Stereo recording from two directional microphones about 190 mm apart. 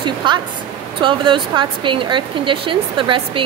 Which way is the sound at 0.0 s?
25° right (ahead or behind).